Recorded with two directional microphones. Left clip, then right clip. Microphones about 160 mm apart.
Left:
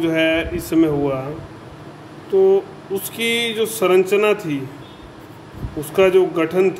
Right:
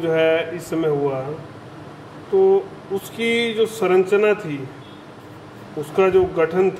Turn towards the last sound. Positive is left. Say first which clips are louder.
# left 1 dB
turn(degrees=30)  # may be behind; listen again after turning